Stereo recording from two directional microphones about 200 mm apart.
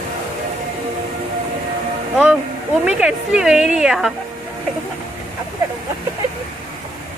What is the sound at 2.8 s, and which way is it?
A woman's voice, 5° right (ahead or behind).